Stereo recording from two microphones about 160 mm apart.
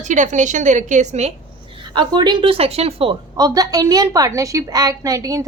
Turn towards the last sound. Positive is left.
turn(degrees=-20)  # may be behind; listen again after turning